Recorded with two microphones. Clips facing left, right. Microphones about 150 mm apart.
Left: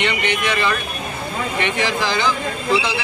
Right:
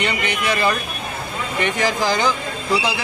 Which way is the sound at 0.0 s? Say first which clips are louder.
Left 1 dB; 40° right (ahead or behind).